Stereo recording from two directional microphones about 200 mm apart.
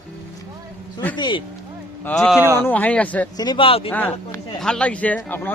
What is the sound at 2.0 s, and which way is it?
Speech, 5° left (ahead or behind).